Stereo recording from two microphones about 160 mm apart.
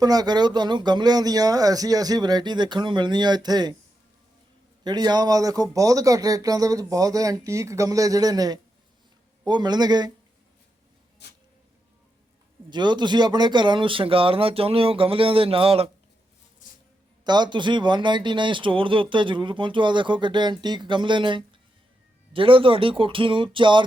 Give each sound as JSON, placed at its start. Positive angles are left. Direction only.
{"t": 0.0, "sound": "speech", "side_deg": -25}
{"t": 4.8, "sound": "speech", "side_deg": -25}
{"t": 11.2, "sound": "a sound", "side_deg": 90}
{"t": 12.7, "sound": "speech", "side_deg": -30}
{"t": 17.2, "sound": "speech", "side_deg": -25}